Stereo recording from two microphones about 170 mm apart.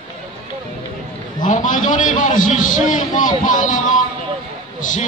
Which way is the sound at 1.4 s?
50° left (ahead or behind).